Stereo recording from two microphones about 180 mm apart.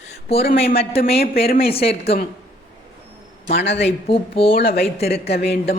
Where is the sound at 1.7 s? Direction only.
35° left (ahead or behind).